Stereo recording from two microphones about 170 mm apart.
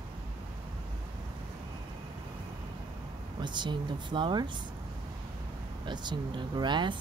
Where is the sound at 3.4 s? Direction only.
25° right (ahead or behind).